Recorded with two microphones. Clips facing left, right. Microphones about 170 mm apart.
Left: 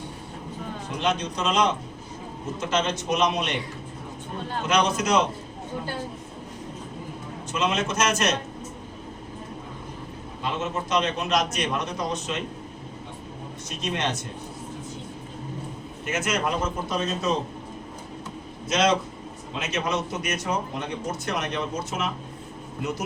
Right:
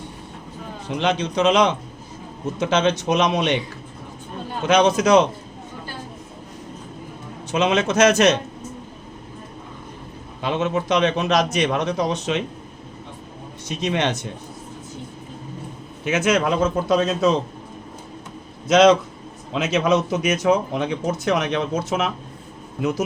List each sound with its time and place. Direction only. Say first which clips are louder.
0.9 s speech: right 6 dB; 90° right
4.6 s speech: right 7 dB; 90° right
7.5 s speech: right 7 dB; 90° right
10.4 s speech: right 7 dB; 85° right
13.7 s speech: right 7 dB; 85° right
16.0 s speech: right 7 dB; 90° right
19.5 s speech: right 9 dB; 90° right